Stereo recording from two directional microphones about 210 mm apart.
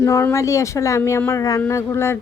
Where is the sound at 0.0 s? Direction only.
15° left (ahead or behind).